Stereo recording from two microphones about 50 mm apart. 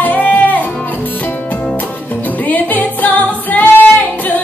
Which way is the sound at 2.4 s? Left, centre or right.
Left.